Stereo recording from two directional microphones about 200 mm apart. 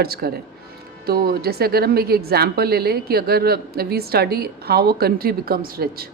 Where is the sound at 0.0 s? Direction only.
50° right (ahead or behind).